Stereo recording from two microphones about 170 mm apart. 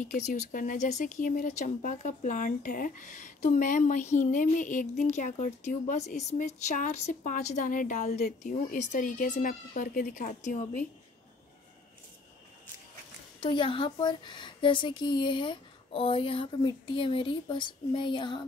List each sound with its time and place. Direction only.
0.0 s speech: 45° left (ahead or behind)
13.4 s a woman's voice: 30° left (ahead or behind)